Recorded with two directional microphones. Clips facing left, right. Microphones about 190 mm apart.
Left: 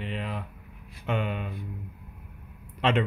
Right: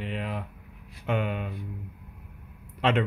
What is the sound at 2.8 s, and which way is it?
Speech, 5° right (ahead or behind).